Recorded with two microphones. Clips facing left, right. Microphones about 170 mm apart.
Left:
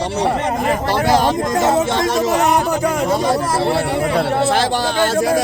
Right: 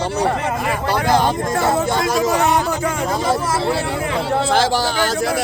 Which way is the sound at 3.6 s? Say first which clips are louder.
Left 3 dB; 65° left (ahead or behind).